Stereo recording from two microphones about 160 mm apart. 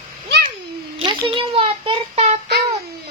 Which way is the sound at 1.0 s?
35° right (ahead or behind).